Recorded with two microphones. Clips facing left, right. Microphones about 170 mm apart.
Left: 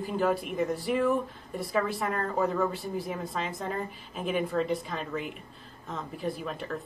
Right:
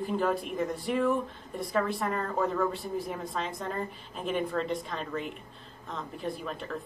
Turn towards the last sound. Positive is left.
turn(degrees=0)  # may be behind; listen again after turning